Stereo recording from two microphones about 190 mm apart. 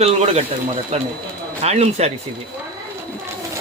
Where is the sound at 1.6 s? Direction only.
35° right (ahead or behind).